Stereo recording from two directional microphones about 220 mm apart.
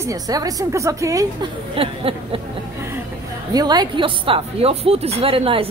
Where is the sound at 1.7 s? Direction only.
25° right (ahead or behind).